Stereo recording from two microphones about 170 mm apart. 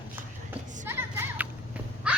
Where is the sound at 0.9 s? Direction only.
15° right (ahead or behind).